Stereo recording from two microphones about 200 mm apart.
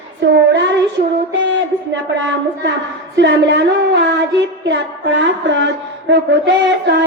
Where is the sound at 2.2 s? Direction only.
65° right (ahead or behind).